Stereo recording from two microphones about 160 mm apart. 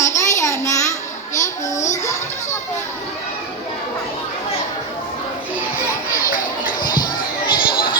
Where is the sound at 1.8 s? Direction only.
45° left (ahead or behind).